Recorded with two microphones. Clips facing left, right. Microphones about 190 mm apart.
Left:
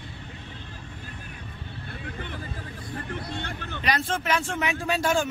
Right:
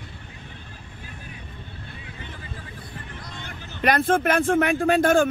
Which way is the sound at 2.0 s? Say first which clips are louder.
Left 8 dB; 55° left (ahead or behind).